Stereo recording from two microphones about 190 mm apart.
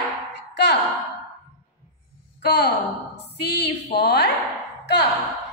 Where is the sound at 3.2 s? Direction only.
60° left (ahead or behind).